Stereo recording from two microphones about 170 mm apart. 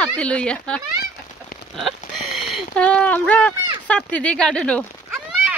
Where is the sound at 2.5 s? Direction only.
5° left (ahead or behind).